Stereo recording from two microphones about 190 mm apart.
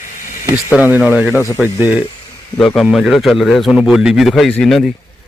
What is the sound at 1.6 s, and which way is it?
A man's voice, 10° right (ahead or behind).